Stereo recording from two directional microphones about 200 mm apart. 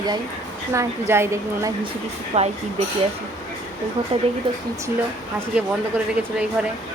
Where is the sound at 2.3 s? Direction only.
30° right (ahead or behind).